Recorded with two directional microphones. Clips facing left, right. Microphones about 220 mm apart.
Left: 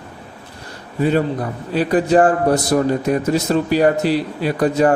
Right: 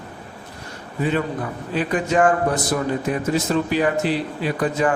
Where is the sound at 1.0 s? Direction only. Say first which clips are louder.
Left 5 dB; 40° left (ahead or behind).